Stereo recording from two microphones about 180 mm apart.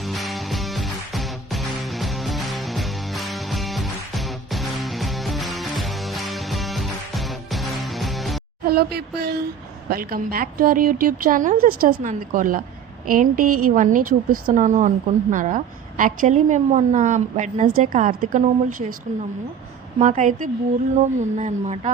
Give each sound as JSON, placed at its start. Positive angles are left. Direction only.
{"t": 0.0, "sound": "music", "side_deg": 0}
{"t": 8.6, "sound": "a woman's voice", "side_deg": -60}
{"t": 20.0, "sound": "a woman's voice", "side_deg": -45}